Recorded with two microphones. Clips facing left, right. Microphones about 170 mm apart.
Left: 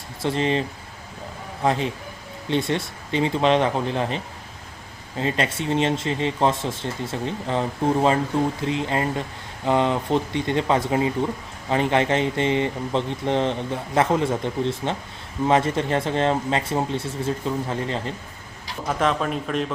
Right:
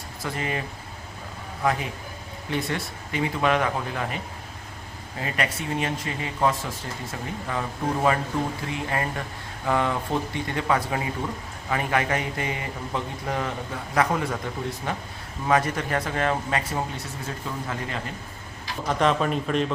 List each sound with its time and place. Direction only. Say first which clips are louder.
0.2 s speech: left 7 dB; 25° left (ahead or behind)
1.6 s speech: left 3 dB; 25° left (ahead or behind)
5.2 s speech: left 5 dB; 25° left (ahead or behind)
8.6 s speech: left 5 dB; 20° left (ahead or behind)
18.9 s a man's voice: even; centre (ahead or behind)